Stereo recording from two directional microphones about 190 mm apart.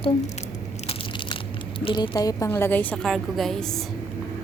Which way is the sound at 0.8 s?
30° left (ahead or behind).